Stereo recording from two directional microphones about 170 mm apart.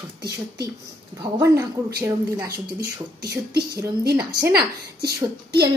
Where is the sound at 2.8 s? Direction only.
65° right (ahead or behind).